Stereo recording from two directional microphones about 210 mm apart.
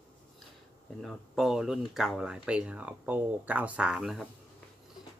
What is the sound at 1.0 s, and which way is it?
Speech, centre (ahead or behind).